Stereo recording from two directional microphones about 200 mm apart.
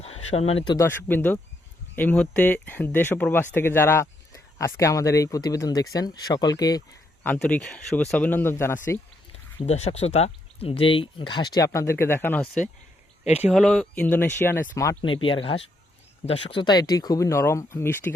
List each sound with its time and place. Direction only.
0.0 s speech: 30° left (ahead or behind)
0.9 s speech: 10° left (ahead or behind)
7.3 s speech: 5° left (ahead or behind)
9.6 s speech: 35° left (ahead or behind); by 12.5 s 10° left (ahead or behind)
13.3 s speech: 5° right (ahead or behind); by 18.1 s 15° left (ahead or behind)